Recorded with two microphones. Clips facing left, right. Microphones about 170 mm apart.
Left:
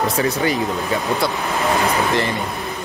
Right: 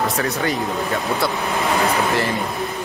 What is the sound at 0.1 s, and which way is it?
Speech, centre (ahead or behind).